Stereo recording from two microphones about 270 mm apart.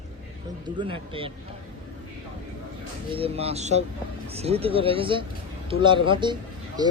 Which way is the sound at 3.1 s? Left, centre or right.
Right.